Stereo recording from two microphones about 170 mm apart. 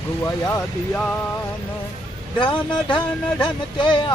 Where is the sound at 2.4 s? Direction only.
30° left (ahead or behind).